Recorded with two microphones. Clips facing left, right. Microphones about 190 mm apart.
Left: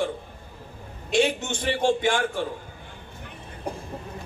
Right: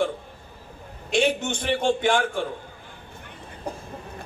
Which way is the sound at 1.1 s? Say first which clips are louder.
Even; 55° right (ahead or behind).